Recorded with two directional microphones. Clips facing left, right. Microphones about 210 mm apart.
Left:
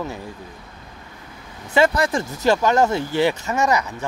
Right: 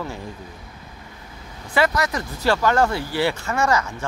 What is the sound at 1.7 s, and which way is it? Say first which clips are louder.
Speech: left 3 dB; 25° left (ahead or behind).